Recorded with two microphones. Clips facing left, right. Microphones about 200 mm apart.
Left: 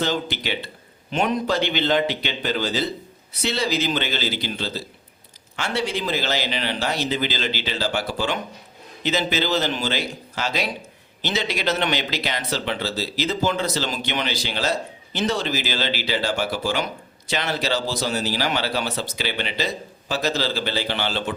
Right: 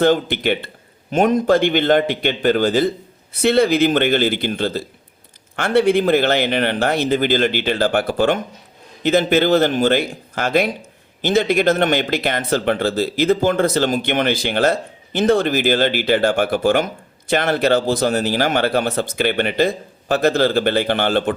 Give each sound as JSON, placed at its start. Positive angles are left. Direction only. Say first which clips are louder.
{"t": 0.0, "sound": "speech", "louder": "right 9 dB", "side_deg": -55}